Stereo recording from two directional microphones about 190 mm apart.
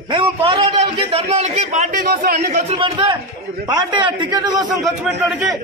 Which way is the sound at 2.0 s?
50° right (ahead or behind).